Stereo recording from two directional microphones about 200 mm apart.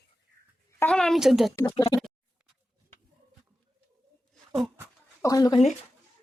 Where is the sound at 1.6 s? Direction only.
20° left (ahead or behind).